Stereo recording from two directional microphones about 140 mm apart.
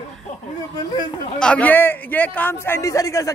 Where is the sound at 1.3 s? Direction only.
10° left (ahead or behind).